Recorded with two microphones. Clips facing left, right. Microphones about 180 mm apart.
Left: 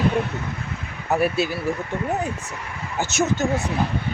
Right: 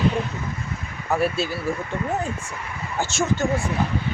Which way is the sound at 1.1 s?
15° left (ahead or behind).